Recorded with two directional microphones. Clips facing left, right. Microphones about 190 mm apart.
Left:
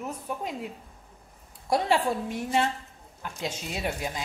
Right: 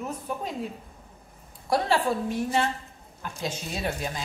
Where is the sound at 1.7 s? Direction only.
20° left (ahead or behind).